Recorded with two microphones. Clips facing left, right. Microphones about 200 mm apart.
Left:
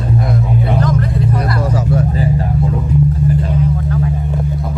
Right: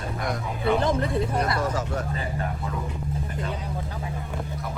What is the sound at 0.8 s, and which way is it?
Vehicle, 25° right (ahead or behind).